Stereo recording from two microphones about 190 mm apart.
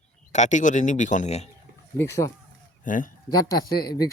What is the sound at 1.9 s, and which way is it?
Speech, 15° left (ahead or behind).